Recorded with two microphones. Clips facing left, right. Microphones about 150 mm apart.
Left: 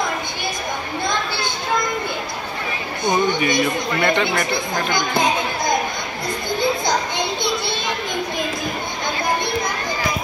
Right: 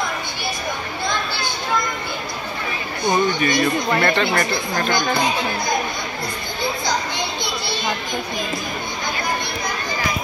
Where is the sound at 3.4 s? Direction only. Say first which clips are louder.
Even; 15° left (ahead or behind).